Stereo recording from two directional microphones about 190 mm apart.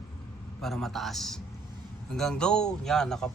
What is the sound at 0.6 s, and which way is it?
Speech, centre (ahead or behind).